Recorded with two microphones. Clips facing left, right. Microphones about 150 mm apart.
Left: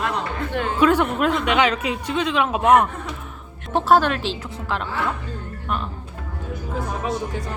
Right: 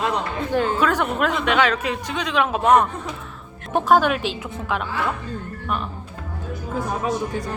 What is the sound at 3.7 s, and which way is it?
A woman's voice, 10° right (ahead or behind).